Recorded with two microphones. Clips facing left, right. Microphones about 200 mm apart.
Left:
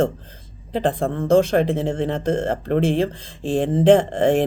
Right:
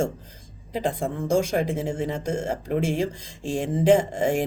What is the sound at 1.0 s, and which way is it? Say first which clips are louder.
Mantra: left 7 dB; 60° left (ahead or behind).